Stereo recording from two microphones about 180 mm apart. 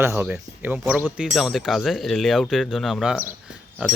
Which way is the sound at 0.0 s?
10° right (ahead or behind).